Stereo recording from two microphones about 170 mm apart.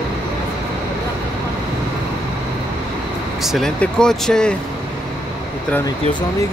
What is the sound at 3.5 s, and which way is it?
Speech, 5° left (ahead or behind).